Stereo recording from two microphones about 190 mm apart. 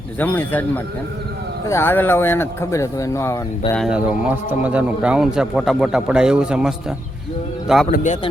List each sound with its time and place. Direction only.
0.2 s speech: 10° left (ahead or behind)
1.6 s speech: 15° left (ahead or behind)
3.8 s a man's voice: 5° right (ahead or behind)
7.9 s speech: 40° left (ahead or behind)